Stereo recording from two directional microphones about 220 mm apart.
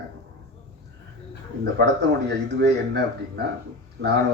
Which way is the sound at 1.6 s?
50° right (ahead or behind).